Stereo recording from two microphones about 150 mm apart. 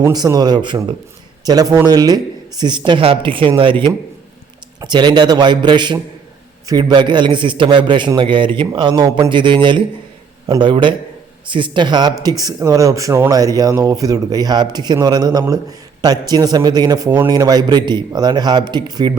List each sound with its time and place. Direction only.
0.0 s a man's voice: 25° right (ahead or behind)